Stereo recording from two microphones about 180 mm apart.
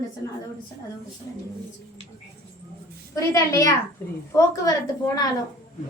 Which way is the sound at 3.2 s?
20° left (ahead or behind).